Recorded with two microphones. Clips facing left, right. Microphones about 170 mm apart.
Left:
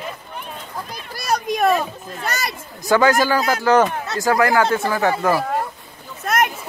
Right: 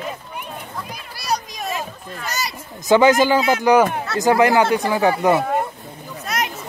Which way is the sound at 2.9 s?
20° right (ahead or behind).